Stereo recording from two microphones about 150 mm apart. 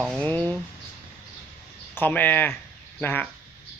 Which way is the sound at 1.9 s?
10° left (ahead or behind).